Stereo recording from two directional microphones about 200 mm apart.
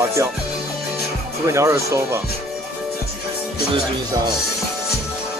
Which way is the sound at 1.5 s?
15° right (ahead or behind).